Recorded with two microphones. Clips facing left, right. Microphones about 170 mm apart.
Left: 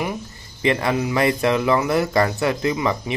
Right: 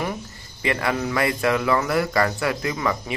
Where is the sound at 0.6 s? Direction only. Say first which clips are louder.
Left 4 dB; 25° left (ahead or behind).